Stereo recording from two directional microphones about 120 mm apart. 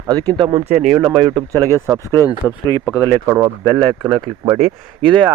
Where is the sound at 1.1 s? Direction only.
45° right (ahead or behind).